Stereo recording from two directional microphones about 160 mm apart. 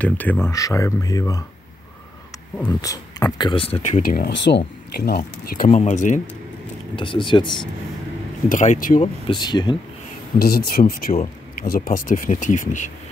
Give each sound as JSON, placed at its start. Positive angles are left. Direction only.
{"t": 0.0, "sound": "speech", "side_deg": 10}
{"t": 2.8, "sound": "speech", "side_deg": 20}
{"t": 4.0, "sound": "speech", "side_deg": 65}
{"t": 5.7, "sound": "speech", "side_deg": 50}
{"t": 7.0, "sound": "speech", "side_deg": 30}
{"t": 8.5, "sound": "speech", "side_deg": 55}
{"t": 9.3, "sound": "speech", "side_deg": 25}
{"t": 10.4, "sound": "speech", "side_deg": 75}